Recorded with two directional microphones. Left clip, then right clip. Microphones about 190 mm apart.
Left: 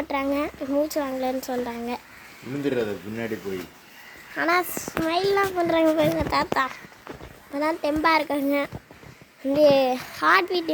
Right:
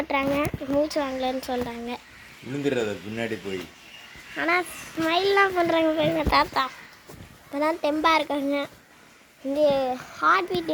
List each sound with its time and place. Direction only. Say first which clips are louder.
0.0 s speech: right 1 dB; centre (ahead or behind)
2.6 s speech: even; 20° right (ahead or behind)
4.4 s speech: left 2 dB; 5° right (ahead or behind)
9.5 s a child's voice: left 4 dB; 15° left (ahead or behind)